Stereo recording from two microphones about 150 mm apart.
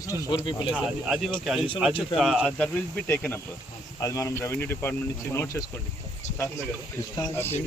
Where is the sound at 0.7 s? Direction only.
5° right (ahead or behind).